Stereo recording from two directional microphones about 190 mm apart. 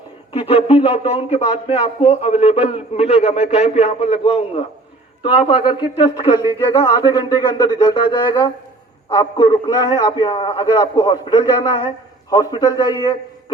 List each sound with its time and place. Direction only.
0.3 s speech: 30° left (ahead or behind)